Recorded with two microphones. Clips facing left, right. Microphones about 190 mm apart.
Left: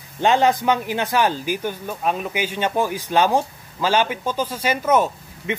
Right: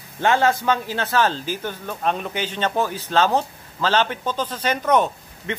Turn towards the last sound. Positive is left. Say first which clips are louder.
# left 2 dB
turn(degrees=5)  # may be behind; listen again after turning